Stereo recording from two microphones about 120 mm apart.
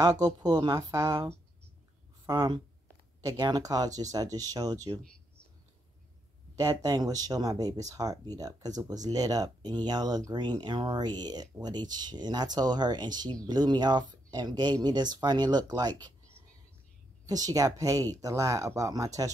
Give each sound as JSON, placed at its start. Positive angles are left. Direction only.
{"t": 0.0, "sound": "speech", "side_deg": -35}
{"t": 6.5, "sound": "speech", "side_deg": -35}
{"t": 17.3, "sound": "speech", "side_deg": -30}